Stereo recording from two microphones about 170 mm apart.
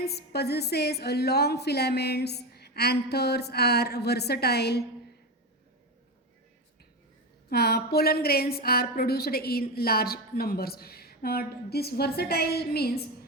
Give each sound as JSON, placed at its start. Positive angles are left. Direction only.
{"t": 0.0, "sound": "a woman's voice", "side_deg": 70}
{"t": 7.5, "sound": "a woman's voice", "side_deg": 70}